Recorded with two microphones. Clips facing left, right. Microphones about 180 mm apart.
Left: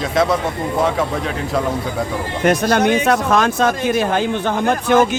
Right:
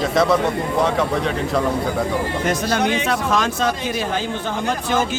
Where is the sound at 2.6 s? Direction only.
50° left (ahead or behind).